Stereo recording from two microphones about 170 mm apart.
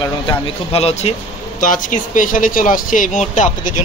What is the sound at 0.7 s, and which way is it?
Speech, 40° left (ahead or behind).